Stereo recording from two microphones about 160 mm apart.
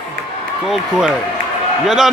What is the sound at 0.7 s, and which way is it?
Speech, 5° right (ahead or behind).